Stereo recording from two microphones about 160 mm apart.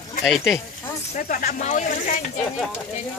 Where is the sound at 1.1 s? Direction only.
55° left (ahead or behind).